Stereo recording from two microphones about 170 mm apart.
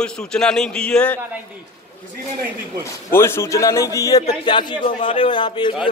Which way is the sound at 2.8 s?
15° left (ahead or behind).